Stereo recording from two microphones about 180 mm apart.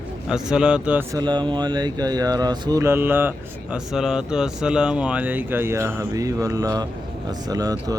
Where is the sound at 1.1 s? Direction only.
25° right (ahead or behind).